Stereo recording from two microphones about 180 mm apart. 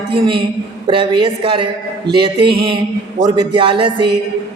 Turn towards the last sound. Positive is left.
turn(degrees=-30)  # may be behind; listen again after turning